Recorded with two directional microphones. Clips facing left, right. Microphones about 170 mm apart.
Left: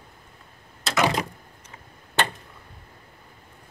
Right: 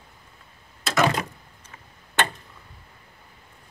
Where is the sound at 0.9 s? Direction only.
15° left (ahead or behind).